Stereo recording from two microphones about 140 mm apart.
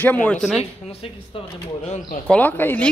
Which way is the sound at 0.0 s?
10° left (ahead or behind).